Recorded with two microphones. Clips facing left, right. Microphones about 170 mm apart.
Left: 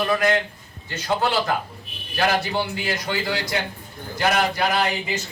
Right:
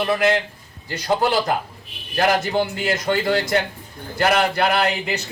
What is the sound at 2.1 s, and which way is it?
A man's voice, 45° right (ahead or behind).